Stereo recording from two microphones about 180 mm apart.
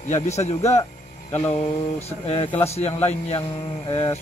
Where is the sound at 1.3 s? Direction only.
10° left (ahead or behind).